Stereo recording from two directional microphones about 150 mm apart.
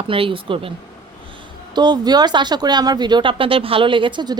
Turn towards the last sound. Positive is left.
turn(degrees=-30)  # may be behind; listen again after turning